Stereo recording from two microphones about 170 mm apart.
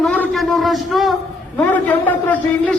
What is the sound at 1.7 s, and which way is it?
A man's voice, 10° left (ahead or behind).